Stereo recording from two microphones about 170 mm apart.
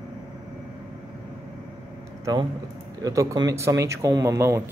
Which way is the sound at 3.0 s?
20° right (ahead or behind).